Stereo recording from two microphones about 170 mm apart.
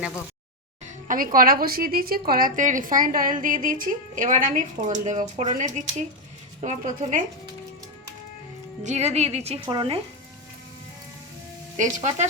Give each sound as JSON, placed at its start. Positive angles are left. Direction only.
{"t": 1.0, "sound": "a woman's voice", "side_deg": -55}
{"t": 8.8, "sound": "a woman's voice", "side_deg": -40}
{"t": 11.8, "sound": "speech", "side_deg": -45}